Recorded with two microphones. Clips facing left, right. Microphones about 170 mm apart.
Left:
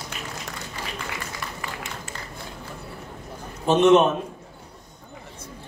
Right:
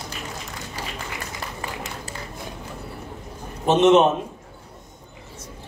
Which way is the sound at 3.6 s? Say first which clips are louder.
Right 1 dB; 20° right (ahead or behind).